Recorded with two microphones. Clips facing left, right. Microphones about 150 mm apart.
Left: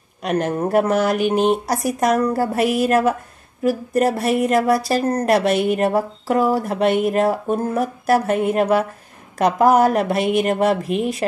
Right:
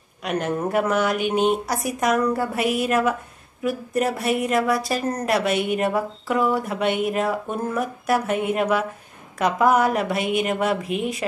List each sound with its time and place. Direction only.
0.2 s speech: 40° left (ahead or behind)